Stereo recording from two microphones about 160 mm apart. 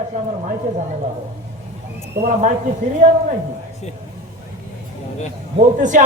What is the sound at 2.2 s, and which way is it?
Speech, 50° right (ahead or behind).